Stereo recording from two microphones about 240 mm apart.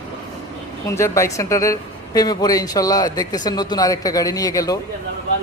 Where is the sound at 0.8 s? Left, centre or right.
Centre.